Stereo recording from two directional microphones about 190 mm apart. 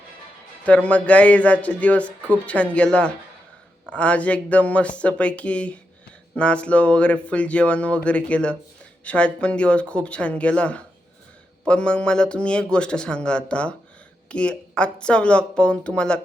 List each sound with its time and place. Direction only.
0.6 s a man's voice: 5° left (ahead or behind)